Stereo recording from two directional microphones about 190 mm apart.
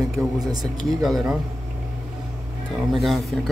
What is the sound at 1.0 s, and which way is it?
Speech, centre (ahead or behind).